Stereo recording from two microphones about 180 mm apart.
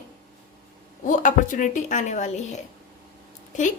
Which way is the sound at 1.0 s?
45° left (ahead or behind).